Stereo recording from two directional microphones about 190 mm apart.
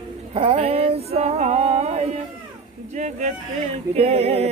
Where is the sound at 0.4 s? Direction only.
30° right (ahead or behind).